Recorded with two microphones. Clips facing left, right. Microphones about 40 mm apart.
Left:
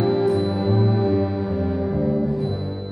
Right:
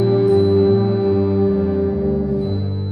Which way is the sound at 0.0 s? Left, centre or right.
Centre.